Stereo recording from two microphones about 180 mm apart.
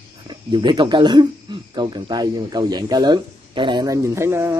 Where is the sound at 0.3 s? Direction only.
25° right (ahead or behind).